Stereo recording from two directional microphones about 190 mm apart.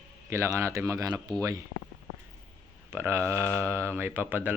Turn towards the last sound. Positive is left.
turn(degrees=-10)  # may be behind; listen again after turning